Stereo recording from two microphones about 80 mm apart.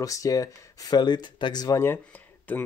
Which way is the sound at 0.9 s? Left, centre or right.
Left.